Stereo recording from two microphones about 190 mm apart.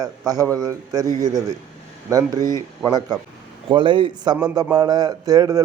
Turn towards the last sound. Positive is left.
turn(degrees=-20)  # may be behind; listen again after turning